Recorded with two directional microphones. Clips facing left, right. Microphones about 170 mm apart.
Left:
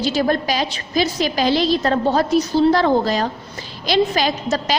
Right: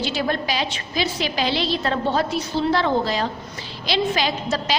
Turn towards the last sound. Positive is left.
turn(degrees=45)  # may be behind; listen again after turning